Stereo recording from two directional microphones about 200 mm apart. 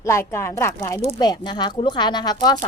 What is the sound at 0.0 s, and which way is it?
A woman's voice, 15° left (ahead or behind).